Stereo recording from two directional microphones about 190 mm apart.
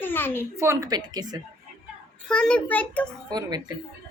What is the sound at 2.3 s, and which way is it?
Speech, 5° left (ahead or behind).